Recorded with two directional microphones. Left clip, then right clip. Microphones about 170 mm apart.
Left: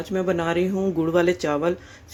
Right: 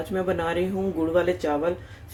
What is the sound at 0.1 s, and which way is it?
Speech, 30° left (ahead or behind).